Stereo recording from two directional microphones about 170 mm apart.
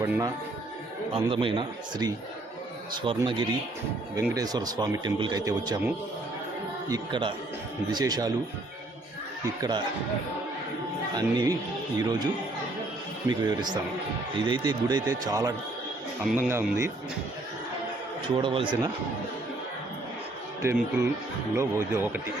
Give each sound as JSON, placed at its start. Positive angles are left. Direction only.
{"t": 0.0, "sound": "a man's voice", "side_deg": -20}
{"t": 1.1, "sound": "a man's voice", "side_deg": -30}
{"t": 6.8, "sound": "speech", "side_deg": -25}
{"t": 9.6, "sound": "speech", "side_deg": -25}
{"t": 11.1, "sound": "a man's voice", "side_deg": -25}
{"t": 18.3, "sound": "speech", "side_deg": -30}
{"t": 20.6, "sound": "a man's voice", "side_deg": -15}